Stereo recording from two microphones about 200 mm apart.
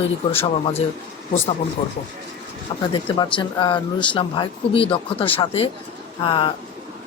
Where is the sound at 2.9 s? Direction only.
20° left (ahead or behind).